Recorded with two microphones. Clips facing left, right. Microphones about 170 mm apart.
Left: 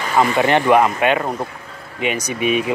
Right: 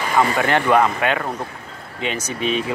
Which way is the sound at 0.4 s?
20° left (ahead or behind).